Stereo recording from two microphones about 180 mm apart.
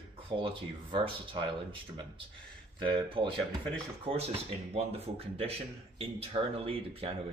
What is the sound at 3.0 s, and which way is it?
Speech, 30° right (ahead or behind).